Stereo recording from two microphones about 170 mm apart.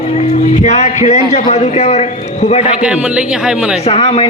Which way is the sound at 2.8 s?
5° right (ahead or behind).